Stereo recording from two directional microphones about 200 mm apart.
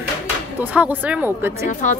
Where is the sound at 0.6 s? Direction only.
10° right (ahead or behind).